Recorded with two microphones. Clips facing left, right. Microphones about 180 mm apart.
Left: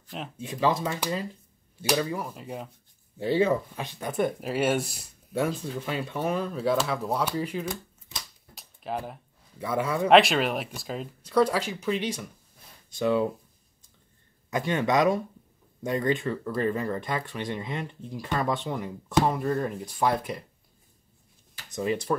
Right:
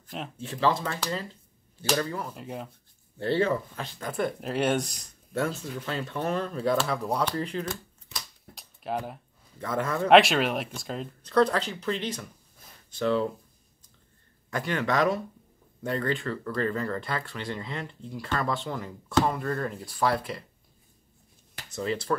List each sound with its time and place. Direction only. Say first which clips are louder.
0.4 s speech: left 1 dB; 15° left (ahead or behind)
2.3 s speech: even; centre (ahead or behind)
8.5 s a sound: right 1 dB; centre (ahead or behind)
9.6 s speech: left 1 dB; 10° left (ahead or behind)
14.5 s speech: left 3 dB; 15° left (ahead or behind)
21.6 s speech: left 2 dB; 15° left (ahead or behind)